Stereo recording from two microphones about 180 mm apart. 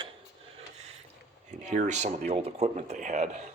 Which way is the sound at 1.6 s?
40° right (ahead or behind).